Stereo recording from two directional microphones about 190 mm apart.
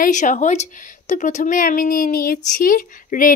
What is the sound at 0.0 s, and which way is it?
A woman's voice, 40° left (ahead or behind).